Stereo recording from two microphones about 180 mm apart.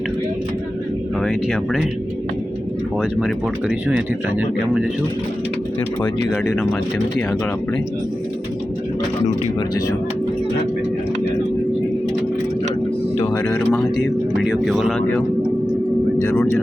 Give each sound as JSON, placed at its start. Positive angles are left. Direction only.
{"t": 1.2, "sound": "speech", "side_deg": 0}
{"t": 3.0, "sound": "speech", "side_deg": -5}
{"t": 6.0, "sound": "speech", "side_deg": 20}
{"t": 13.3, "sound": "speech", "side_deg": 5}
{"t": 16.2, "sound": "speech", "side_deg": 10}